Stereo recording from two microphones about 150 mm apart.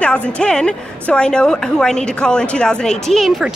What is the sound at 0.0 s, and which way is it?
A woman's voice, 10° left (ahead or behind).